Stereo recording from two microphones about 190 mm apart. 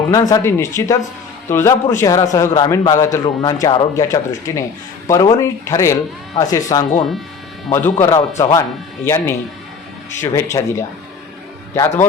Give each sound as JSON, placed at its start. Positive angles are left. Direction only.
{"t": 0.1, "sound": "a man's voice", "side_deg": 20}